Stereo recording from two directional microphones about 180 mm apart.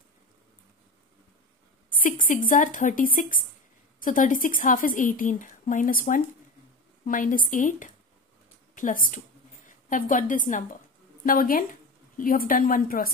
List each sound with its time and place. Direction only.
2.0 s a woman's voice: 50° left (ahead or behind)